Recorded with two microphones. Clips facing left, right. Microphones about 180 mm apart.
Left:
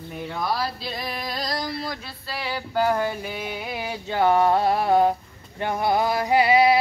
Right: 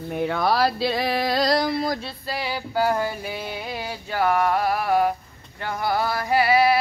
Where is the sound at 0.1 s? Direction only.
65° right (ahead or behind).